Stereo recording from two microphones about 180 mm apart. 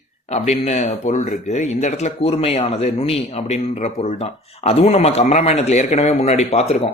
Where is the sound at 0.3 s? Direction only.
40° left (ahead or behind).